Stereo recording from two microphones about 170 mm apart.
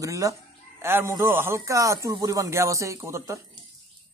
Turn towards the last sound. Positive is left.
turn(degrees=-20)  # may be behind; listen again after turning